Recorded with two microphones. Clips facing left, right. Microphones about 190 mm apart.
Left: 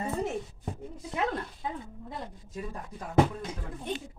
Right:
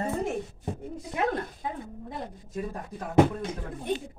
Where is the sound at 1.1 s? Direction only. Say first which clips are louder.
Right 3 dB; 45° right (ahead or behind).